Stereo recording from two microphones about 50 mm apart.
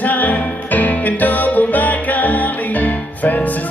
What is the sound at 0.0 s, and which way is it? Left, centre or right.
Music, left.